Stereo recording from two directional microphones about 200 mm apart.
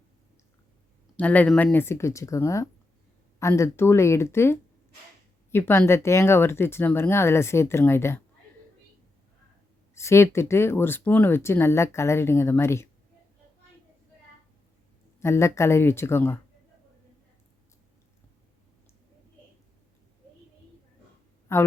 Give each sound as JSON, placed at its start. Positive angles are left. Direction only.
{"t": 1.1, "sound": "speech", "side_deg": 10}
{"t": 9.9, "sound": "speech", "side_deg": 15}
{"t": 15.2, "sound": "speech", "side_deg": 15}
{"t": 21.5, "sound": "speech", "side_deg": 15}